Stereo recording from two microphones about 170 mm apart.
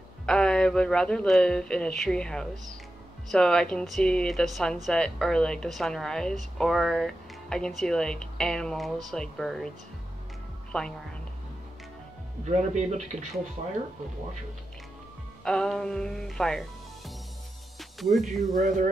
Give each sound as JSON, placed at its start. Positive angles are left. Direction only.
{"t": 0.3, "sound": "speech", "side_deg": 5}
{"t": 10.7, "sound": "a woman's voice", "side_deg": 5}
{"t": 12.4, "sound": "a man's voice", "side_deg": -40}
{"t": 15.4, "sound": "speech", "side_deg": 5}
{"t": 17.7, "sound": "music", "side_deg": 0}
{"t": 18.5, "sound": "speech", "side_deg": -45}